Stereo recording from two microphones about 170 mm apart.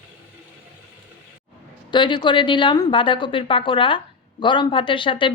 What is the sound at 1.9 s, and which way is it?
A woman's voice, 25° left (ahead or behind).